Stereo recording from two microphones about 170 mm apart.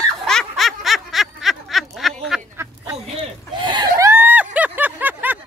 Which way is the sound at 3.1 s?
30° right (ahead or behind).